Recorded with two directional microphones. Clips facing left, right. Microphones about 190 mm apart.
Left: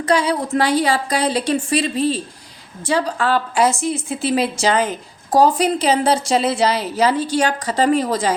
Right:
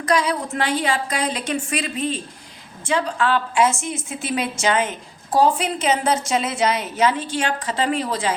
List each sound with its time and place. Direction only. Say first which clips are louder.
0.0 s a woman's voice: left 3 dB; 30° left (ahead or behind)